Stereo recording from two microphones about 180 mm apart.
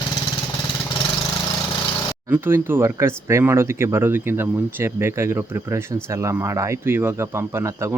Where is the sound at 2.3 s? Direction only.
10° right (ahead or behind).